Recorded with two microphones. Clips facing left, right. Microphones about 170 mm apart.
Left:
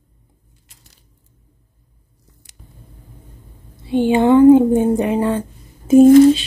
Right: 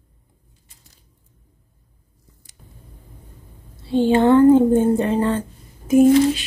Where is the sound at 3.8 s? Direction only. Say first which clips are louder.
Left 1 dB; 15° left (ahead or behind).